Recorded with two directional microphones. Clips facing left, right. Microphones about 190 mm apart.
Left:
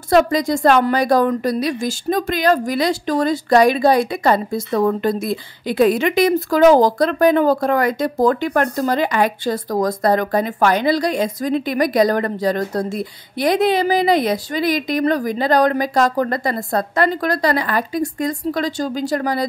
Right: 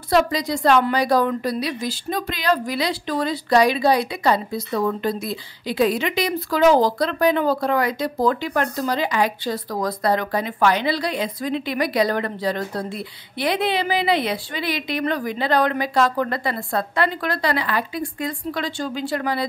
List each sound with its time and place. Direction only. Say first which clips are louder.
0.1 s a woman's voice: left 5 dB; 50° left (ahead or behind)